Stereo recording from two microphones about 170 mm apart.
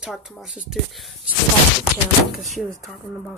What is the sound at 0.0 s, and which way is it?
Speech, 5° right (ahead or behind).